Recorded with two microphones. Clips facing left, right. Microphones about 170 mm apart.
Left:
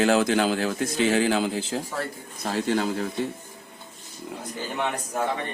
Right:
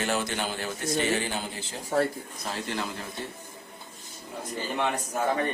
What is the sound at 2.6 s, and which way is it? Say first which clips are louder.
Speech: left 12 dB; 60° left (ahead or behind).